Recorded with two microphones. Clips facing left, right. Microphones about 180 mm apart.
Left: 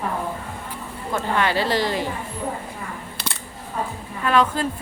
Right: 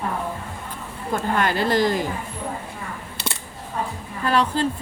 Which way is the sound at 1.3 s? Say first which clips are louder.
Right 1 dB; 50° right (ahead or behind).